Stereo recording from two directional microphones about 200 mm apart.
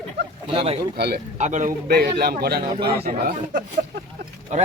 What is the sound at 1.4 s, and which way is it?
Speech, 40° right (ahead or behind).